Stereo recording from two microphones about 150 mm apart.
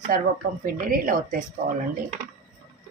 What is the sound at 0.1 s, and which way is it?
Speech, 75° right (ahead or behind).